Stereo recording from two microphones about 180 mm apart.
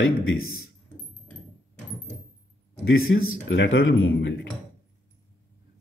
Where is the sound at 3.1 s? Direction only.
90° left.